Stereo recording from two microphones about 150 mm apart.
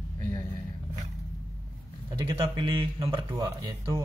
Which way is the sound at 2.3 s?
35° right (ahead or behind).